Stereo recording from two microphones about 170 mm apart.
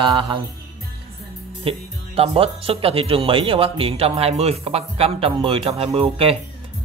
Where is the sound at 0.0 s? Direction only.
30° right (ahead or behind).